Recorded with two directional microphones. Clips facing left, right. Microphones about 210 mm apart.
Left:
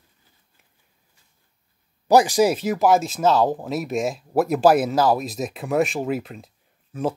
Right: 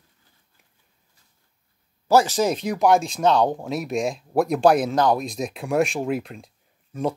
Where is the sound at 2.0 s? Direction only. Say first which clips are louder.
Left 2 dB; 15° left (ahead or behind).